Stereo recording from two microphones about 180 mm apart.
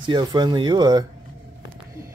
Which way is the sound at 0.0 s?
25° right (ahead or behind).